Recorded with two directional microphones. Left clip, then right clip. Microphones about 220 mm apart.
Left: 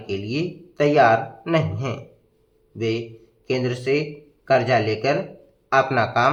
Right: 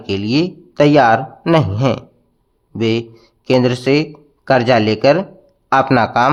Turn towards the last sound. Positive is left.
turn(degrees=-35)  # may be behind; listen again after turning